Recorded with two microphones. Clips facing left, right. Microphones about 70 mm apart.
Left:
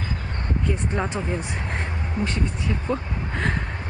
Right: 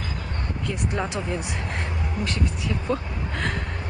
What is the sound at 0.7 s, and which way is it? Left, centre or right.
Speech, centre.